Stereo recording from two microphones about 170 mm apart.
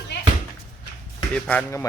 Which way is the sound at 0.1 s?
90° left.